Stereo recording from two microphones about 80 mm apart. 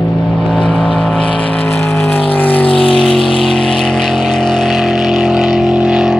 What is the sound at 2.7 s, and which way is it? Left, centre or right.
Vehicle, centre.